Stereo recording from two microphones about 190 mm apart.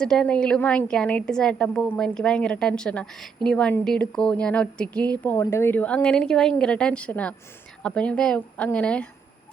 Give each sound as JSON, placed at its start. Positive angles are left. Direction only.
{"t": 0.0, "sound": "a woman's voice", "side_deg": 5}